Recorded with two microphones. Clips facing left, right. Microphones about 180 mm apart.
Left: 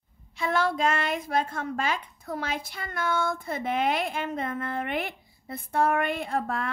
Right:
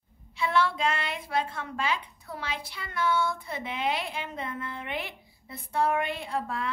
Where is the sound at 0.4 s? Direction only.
45° left (ahead or behind).